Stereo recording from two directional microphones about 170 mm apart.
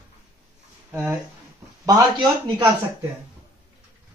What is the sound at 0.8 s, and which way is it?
Speech, 15° right (ahead or behind).